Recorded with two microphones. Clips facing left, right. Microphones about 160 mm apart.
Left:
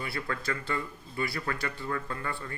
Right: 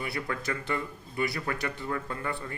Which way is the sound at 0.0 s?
20° right (ahead or behind).